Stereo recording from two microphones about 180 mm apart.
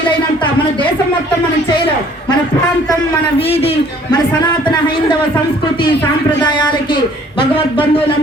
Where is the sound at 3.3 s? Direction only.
30° left (ahead or behind).